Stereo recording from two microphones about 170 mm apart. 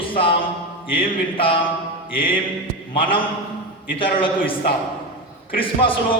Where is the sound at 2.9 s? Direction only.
30° left (ahead or behind).